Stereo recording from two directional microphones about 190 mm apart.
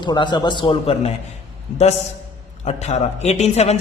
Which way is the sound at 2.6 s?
35° left (ahead or behind).